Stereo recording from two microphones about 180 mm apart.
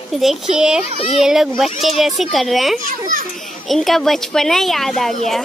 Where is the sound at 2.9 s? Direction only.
45° right (ahead or behind).